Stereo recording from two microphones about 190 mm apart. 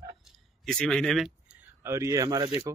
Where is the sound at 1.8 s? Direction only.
15° right (ahead or behind).